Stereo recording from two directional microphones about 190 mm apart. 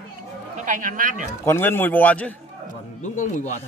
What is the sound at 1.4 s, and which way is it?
Speech, 10° left (ahead or behind).